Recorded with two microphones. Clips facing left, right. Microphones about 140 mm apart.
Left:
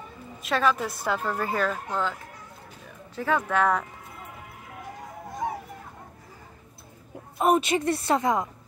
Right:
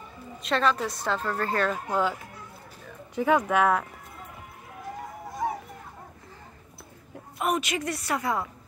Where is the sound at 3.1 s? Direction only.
15° right (ahead or behind).